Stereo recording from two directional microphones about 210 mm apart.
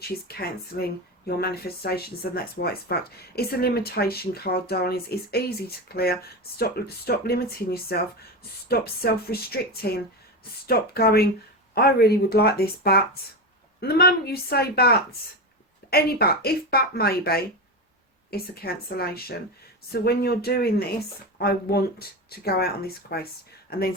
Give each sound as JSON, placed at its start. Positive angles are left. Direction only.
{"t": 0.0, "sound": "speech", "side_deg": 45}